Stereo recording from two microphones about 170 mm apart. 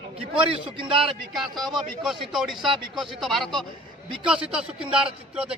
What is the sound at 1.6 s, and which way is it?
Speech, centre (ahead or behind).